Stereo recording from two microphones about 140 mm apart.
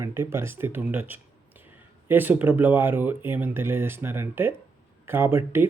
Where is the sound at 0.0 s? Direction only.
20° right (ahead or behind).